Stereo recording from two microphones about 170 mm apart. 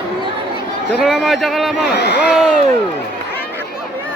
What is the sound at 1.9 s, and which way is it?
Speech, 80° left.